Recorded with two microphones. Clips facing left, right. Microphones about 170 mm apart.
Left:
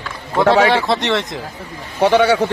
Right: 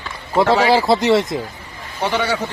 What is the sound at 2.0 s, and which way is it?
Speech, 60° left (ahead or behind).